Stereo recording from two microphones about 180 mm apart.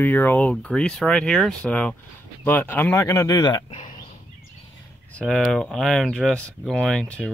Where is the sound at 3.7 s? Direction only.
40° left (ahead or behind).